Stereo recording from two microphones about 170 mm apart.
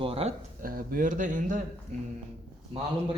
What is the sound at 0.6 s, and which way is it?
Speech, 55° right (ahead or behind).